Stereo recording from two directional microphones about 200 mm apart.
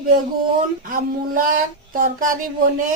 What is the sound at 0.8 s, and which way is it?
Speech, 45° right (ahead or behind).